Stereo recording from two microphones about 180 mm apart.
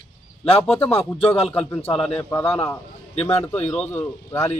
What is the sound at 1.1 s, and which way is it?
Speech, 30° left (ahead or behind).